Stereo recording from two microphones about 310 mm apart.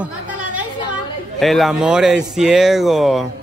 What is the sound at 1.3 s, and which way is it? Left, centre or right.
Speech, centre.